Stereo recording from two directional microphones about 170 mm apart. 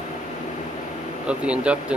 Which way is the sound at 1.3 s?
5° right (ahead or behind).